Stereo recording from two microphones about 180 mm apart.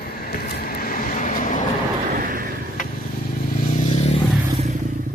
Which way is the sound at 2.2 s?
50° right (ahead or behind).